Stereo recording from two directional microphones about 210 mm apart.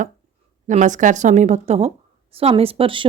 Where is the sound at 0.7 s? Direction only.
35° right (ahead or behind).